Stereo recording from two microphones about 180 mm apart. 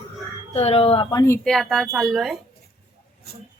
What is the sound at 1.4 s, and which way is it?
Speech, centre (ahead or behind).